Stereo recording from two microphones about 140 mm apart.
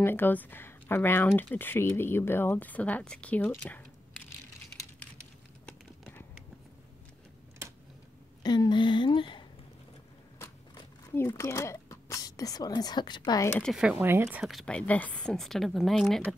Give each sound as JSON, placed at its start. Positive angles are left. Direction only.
{"t": 0.0, "sound": "speech", "side_deg": 15}
{"t": 8.4, "sound": "speech", "side_deg": 30}
{"t": 10.4, "sound": "a sound", "side_deg": 20}
{"t": 13.6, "sound": "speech", "side_deg": 0}
{"t": 14.4, "sound": "a woman's voice", "side_deg": 0}